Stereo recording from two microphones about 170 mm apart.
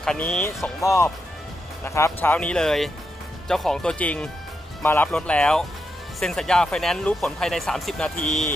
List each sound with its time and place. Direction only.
0.0 s speech: 5° left (ahead or behind)
0.8 s speech: 15° left (ahead or behind)